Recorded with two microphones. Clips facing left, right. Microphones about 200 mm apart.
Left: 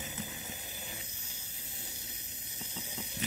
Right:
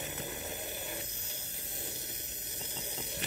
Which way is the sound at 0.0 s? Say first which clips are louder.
Right 3 dB; 60° right (ahead or behind).